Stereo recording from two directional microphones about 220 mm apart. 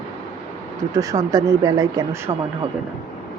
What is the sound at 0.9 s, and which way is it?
Speech, 15° right (ahead or behind).